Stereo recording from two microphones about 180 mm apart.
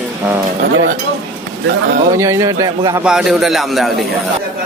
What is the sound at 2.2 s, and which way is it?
Speech, 15° right (ahead or behind).